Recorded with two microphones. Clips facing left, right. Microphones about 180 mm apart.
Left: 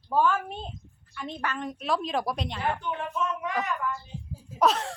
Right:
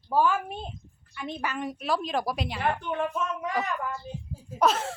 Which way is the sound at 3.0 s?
40° right (ahead or behind).